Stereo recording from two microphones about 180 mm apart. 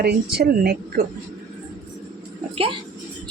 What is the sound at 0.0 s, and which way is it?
Speech, 60° right (ahead or behind).